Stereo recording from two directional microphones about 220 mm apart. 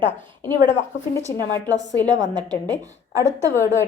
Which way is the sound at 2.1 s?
20° right (ahead or behind).